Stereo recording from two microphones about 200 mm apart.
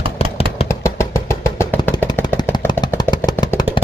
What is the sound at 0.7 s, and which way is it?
Vehicle, 15° left (ahead or behind).